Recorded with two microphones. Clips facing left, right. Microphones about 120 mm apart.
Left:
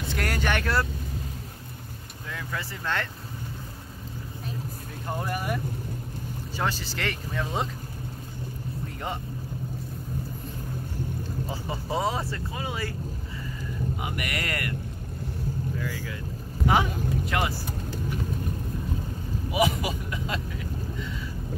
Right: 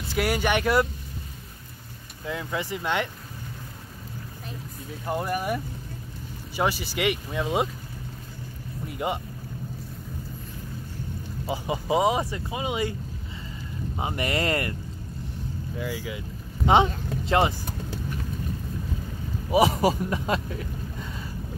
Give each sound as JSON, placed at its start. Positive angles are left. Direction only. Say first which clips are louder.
{"t": 0.1, "sound": "speech", "louder": "right 4 dB", "side_deg": -10}
{"t": 2.2, "sound": "speech", "louder": "right 5 dB", "side_deg": -20}
{"t": 5.1, "sound": "speech", "louder": "right 3 dB", "side_deg": -10}
{"t": 8.8, "sound": "boat", "louder": "right 6 dB", "side_deg": -15}
{"t": 11.4, "sound": "speech", "louder": "right 10 dB", "side_deg": -15}
{"t": 13.9, "sound": "speech", "louder": "right 5 dB", "side_deg": -30}
{"t": 15.8, "sound": "speech", "louder": "right 2 dB", "side_deg": -15}
{"t": 16.6, "sound": "speech", "louder": "right 4 dB", "side_deg": -25}
{"t": 19.5, "sound": "speech", "louder": "right 5 dB", "side_deg": -35}